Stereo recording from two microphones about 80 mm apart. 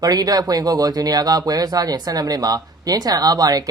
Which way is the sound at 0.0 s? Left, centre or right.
Right.